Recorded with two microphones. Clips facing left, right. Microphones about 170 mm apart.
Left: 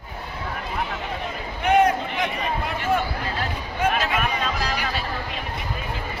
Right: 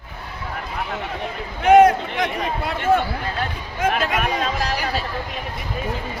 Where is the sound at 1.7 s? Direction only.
90° right.